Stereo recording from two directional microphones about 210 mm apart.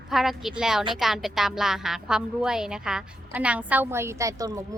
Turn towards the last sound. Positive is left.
turn(degrees=-15)  # may be behind; listen again after turning